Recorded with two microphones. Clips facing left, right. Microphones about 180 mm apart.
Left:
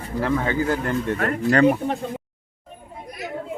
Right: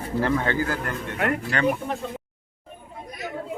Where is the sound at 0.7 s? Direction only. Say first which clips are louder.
Left 6 dB; 25° left (ahead or behind).